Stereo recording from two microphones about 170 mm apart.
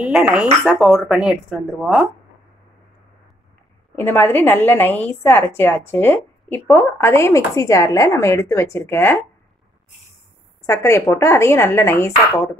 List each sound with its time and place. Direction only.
0.0 s speech: 5° right (ahead or behind)
3.9 s a woman's voice: 10° left (ahead or behind)
10.7 s a woman's voice: 15° left (ahead or behind)